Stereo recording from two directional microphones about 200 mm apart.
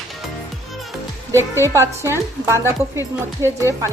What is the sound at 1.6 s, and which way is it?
Speech, 15° right (ahead or behind).